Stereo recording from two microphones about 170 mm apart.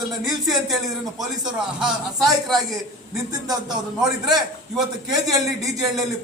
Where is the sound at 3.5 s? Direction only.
25° right (ahead or behind).